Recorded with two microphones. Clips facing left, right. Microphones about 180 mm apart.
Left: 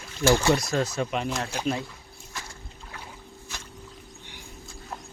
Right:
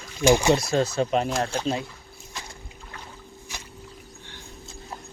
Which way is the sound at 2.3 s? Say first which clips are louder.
Even; 20° right (ahead or behind).